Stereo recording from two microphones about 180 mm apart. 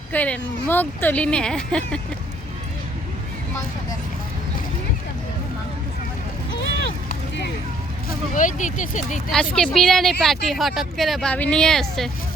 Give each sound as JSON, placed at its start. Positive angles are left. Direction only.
{"t": 0.1, "sound": "speech", "side_deg": 10}
{"t": 8.4, "sound": "speech", "side_deg": 45}
{"t": 9.3, "sound": "speech", "side_deg": 5}